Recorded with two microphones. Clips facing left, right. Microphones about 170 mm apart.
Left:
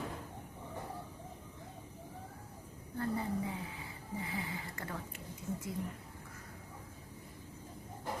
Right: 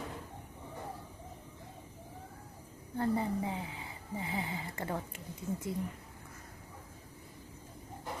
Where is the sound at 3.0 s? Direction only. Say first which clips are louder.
Right 4 dB; 25° right (ahead or behind).